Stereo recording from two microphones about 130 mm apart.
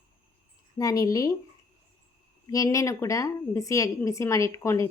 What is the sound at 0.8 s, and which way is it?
Speech, 25° left (ahead or behind).